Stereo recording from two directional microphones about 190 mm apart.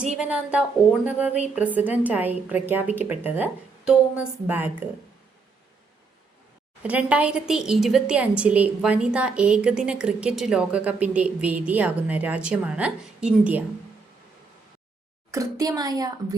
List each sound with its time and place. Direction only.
0.0 s a woman's voice: 5° right (ahead or behind)
6.8 s a woman's voice: 5° right (ahead or behind)
15.3 s speech: 15° right (ahead or behind)